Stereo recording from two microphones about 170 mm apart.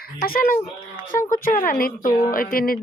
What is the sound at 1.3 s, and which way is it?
A woman's voice, 55° left (ahead or behind).